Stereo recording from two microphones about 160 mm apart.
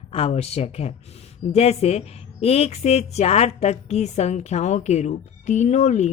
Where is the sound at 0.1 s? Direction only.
40° left (ahead or behind).